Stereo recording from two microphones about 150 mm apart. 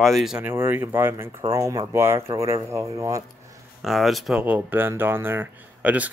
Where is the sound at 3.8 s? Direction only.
Centre (ahead or behind).